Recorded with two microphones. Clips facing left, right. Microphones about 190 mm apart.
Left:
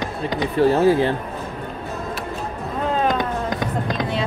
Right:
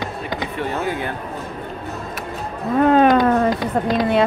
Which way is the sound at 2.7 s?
60° right (ahead or behind).